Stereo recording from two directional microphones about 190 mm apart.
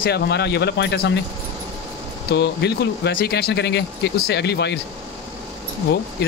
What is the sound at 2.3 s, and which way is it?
Speech, 65° left (ahead or behind).